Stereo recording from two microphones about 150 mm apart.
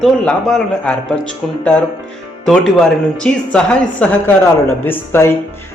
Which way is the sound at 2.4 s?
5° left (ahead or behind).